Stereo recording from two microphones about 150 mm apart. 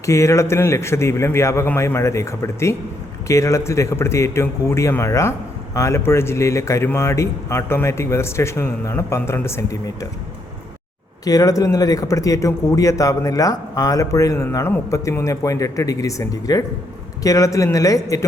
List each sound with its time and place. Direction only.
0.0 s a man's voice: 20° left (ahead or behind)
11.3 s a man's voice: 25° left (ahead or behind)